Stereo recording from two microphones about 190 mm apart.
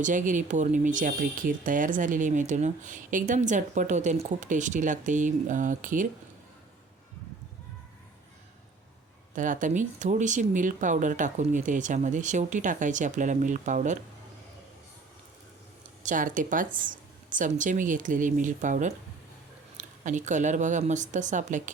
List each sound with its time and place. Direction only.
0.0 s speech: 40° right (ahead or behind)
9.3 s speech: 40° right (ahead or behind)
16.0 s speech: 45° right (ahead or behind)